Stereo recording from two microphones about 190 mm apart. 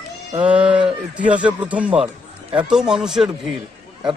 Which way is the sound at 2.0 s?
30° right (ahead or behind).